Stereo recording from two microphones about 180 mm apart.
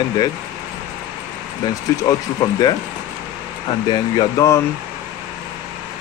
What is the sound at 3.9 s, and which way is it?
Speech, 20° left (ahead or behind).